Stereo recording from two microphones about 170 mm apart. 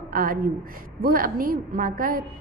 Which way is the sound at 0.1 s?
55° right (ahead or behind).